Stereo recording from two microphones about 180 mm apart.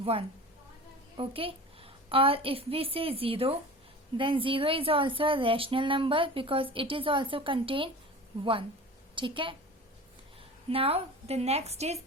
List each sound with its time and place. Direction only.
0.0 s a woman's voice: 30° right (ahead or behind)
9.1 s a woman's voice: 25° right (ahead or behind)
10.7 s a woman's voice: 30° right (ahead or behind)